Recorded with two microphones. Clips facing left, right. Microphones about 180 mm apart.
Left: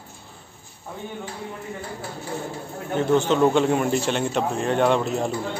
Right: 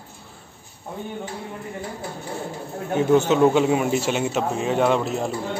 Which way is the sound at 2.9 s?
10° right (ahead or behind).